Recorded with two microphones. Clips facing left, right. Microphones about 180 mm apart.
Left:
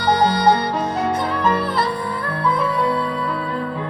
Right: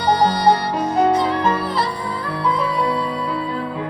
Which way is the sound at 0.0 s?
60° left (ahead or behind).